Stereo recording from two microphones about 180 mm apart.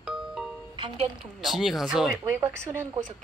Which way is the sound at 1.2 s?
Centre (ahead or behind).